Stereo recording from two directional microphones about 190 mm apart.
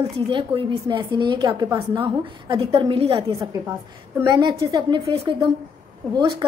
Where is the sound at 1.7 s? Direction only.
10° right (ahead or behind).